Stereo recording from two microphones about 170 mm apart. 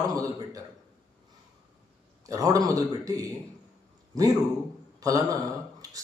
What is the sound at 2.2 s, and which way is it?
Speech, 20° right (ahead or behind).